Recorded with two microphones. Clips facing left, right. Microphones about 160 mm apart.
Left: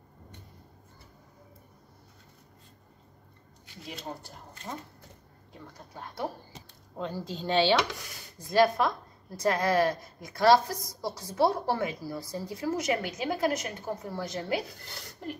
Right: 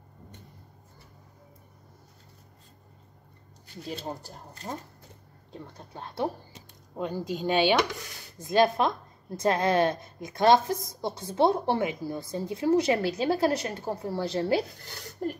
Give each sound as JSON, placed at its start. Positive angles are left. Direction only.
{"t": 3.8, "sound": "speech", "side_deg": -35}
{"t": 5.9, "sound": "a woman's voice", "side_deg": -25}
{"t": 7.0, "sound": "a woman's voice", "side_deg": -15}
{"t": 15.2, "sound": "a sound", "side_deg": -45}